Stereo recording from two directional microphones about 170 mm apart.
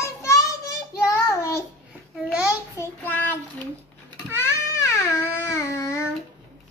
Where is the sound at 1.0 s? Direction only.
20° left (ahead or behind).